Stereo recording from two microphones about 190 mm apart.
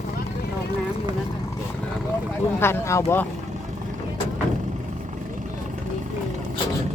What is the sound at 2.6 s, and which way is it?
Speech, 10° left (ahead or behind).